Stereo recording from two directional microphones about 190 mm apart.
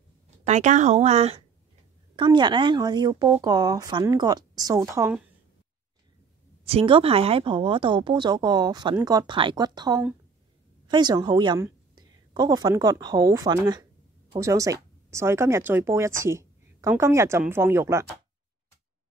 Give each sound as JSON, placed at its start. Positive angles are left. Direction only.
{"t": 0.5, "sound": "a woman's voice", "side_deg": -40}
{"t": 2.1, "sound": "speech", "side_deg": -25}
{"t": 6.6, "sound": "a woman's voice", "side_deg": -30}